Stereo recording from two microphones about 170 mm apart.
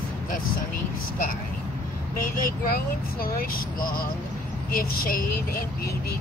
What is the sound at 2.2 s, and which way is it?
Speech, 60° left (ahead or behind).